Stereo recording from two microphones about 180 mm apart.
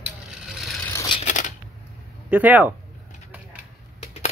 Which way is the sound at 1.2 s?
45° left (ahead or behind).